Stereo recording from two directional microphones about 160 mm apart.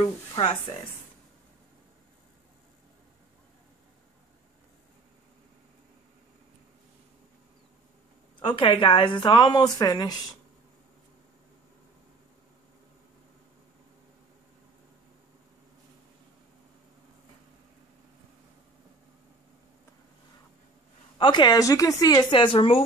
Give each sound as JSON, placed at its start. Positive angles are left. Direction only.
{"t": 0.4, "sound": "speech", "side_deg": 35}
{"t": 8.4, "sound": "a woman's voice", "side_deg": 35}
{"t": 21.2, "sound": "a woman's voice", "side_deg": 25}